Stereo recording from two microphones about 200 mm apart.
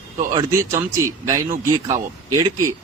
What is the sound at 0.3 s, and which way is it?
A man's voice, 15° right (ahead or behind).